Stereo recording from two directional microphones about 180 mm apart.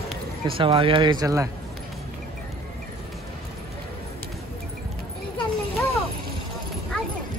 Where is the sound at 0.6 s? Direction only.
30° right (ahead or behind).